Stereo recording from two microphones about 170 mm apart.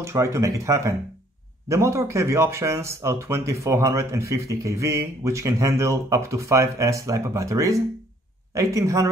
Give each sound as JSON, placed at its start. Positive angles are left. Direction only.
{"t": 0.0, "sound": "speech", "side_deg": -15}